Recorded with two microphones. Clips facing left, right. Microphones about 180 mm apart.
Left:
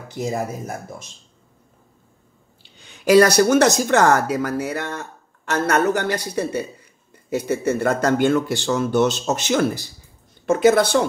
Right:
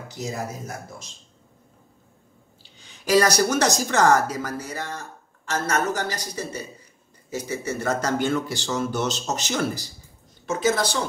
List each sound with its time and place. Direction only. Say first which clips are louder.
0.1 s speech: left 7 dB; 55° left (ahead or behind)
3.1 s speech: left 6 dB; 55° left (ahead or behind)